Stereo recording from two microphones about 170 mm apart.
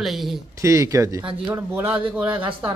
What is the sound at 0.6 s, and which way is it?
A man's voice, 20° right (ahead or behind).